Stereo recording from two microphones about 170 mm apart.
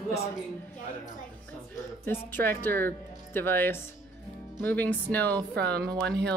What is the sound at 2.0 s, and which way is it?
Speech, 10° left (ahead or behind).